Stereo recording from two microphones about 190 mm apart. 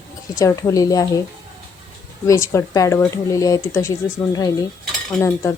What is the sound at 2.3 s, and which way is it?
Speech, 15° left (ahead or behind).